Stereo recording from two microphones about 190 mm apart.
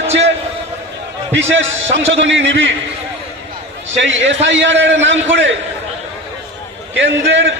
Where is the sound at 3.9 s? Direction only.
75° right (ahead or behind).